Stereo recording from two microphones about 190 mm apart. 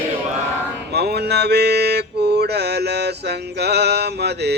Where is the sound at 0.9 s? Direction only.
60° right (ahead or behind).